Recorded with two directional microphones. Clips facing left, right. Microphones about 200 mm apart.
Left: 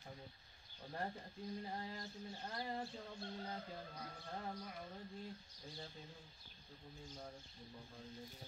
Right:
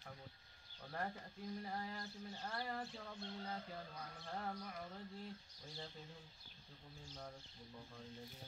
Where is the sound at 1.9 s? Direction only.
20° left (ahead or behind).